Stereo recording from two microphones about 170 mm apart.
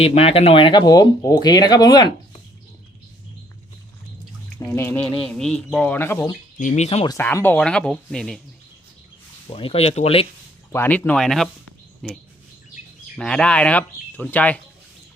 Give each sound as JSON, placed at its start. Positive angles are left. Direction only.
{"t": 0.0, "sound": "speech", "side_deg": 35}
{"t": 4.7, "sound": "speech", "side_deg": 15}
{"t": 6.6, "sound": "speech", "side_deg": 45}
{"t": 7.1, "sound": "speech", "side_deg": 15}
{"t": 9.5, "sound": "speech", "side_deg": 30}
{"t": 10.7, "sound": "speech", "side_deg": 10}